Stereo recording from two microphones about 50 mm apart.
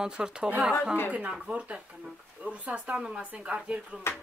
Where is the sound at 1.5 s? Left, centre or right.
Right.